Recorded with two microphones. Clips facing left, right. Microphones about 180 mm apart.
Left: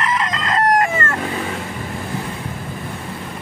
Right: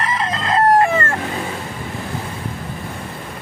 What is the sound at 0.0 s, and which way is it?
Chicken, 30° right (ahead or behind).